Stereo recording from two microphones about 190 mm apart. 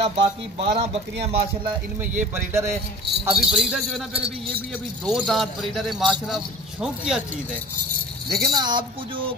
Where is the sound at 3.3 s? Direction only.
5° right (ahead or behind).